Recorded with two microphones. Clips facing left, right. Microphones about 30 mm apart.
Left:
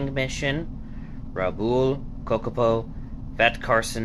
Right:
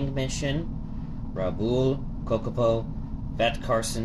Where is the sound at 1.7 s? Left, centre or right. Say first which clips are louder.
Left 2 dB; left.